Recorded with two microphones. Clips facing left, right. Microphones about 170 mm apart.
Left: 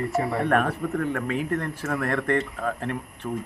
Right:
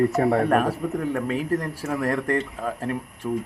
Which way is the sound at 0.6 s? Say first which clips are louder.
Right 1 dB; 10° right (ahead or behind).